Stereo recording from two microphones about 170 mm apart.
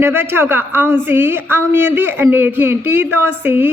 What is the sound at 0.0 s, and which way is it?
A woman's voice, 15° right (ahead or behind).